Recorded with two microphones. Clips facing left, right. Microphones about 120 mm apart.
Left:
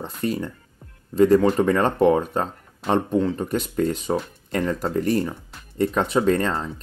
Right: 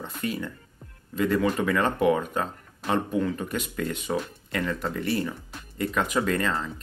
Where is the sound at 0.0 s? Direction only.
40° left (ahead or behind).